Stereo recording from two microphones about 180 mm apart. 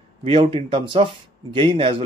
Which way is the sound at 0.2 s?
30° right (ahead or behind).